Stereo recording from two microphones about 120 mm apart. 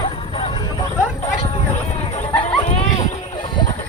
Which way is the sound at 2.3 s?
55° left (ahead or behind).